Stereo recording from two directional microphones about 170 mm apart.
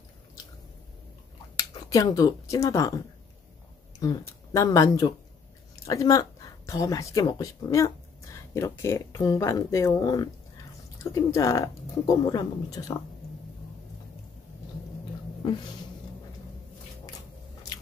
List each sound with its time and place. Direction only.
1.6 s speech: 20° left (ahead or behind)
4.0 s speech: 20° left (ahead or behind)